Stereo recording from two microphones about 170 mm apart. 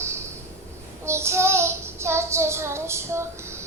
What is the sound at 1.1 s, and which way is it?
Child singing, 15° right (ahead or behind).